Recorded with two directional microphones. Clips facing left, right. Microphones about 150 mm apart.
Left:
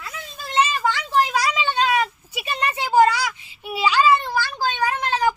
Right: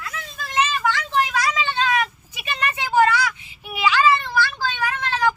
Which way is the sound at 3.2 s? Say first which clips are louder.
Right 2 dB; 35° left (ahead or behind).